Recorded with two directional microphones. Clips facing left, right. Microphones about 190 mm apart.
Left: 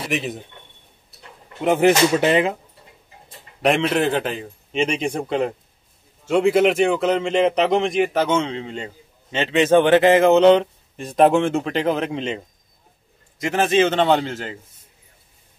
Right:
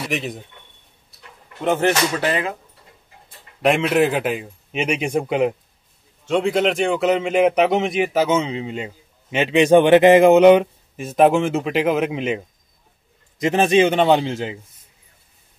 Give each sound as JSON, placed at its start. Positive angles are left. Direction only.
{"t": 0.1, "sound": "speech", "side_deg": 0}
{"t": 1.6, "sound": "speech", "side_deg": 10}
{"t": 3.6, "sound": "a man's voice", "side_deg": 0}
{"t": 6.2, "sound": "a man's voice", "side_deg": 5}
{"t": 13.4, "sound": "a man's voice", "side_deg": -20}